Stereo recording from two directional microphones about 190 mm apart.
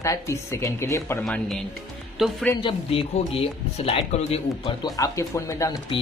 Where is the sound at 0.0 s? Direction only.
15° left (ahead or behind); by 2.3 s centre (ahead or behind).